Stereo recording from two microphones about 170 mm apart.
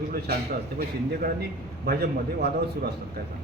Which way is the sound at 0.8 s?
65° right (ahead or behind).